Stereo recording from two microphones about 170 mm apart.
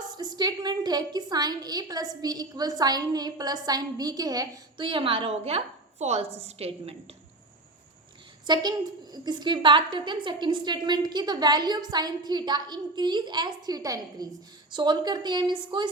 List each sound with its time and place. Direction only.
0.2 s a woman's voice: 25° right (ahead or behind)
8.4 s a woman's voice: 25° right (ahead or behind)